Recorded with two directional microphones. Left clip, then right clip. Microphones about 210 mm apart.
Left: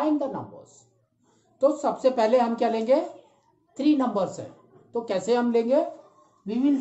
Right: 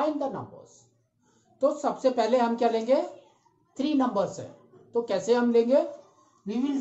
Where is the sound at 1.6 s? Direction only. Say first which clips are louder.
Left 3 dB; 20° left (ahead or behind).